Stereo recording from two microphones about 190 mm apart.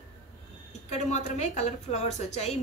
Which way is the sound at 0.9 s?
35° left (ahead or behind).